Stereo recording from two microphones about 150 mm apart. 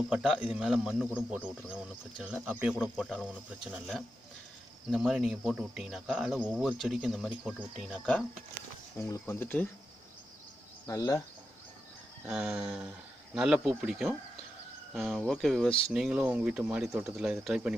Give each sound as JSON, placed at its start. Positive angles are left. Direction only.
{"t": 0.1, "sound": "speech", "side_deg": -5}
{"t": 2.8, "sound": "speech", "side_deg": 5}
{"t": 9.0, "sound": "speech", "side_deg": 20}
{"t": 10.9, "sound": "speech", "side_deg": 20}
{"t": 12.3, "sound": "speech", "side_deg": -5}